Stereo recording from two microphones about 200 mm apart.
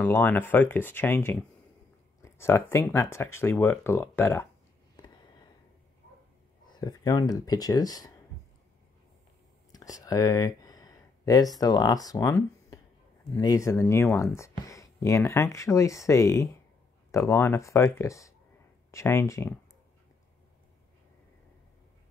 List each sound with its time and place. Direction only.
0.0 s speech: 10° left (ahead or behind)
4.9 s a sound: 20° left (ahead or behind)
6.7 s speech: 20° left (ahead or behind)
9.7 s speech: 20° left (ahead or behind)